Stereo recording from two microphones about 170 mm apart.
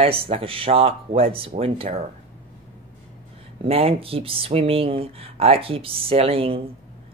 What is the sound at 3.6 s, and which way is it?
Speech, 35° right (ahead or behind).